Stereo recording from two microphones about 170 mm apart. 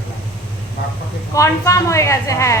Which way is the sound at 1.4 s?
20° left (ahead or behind).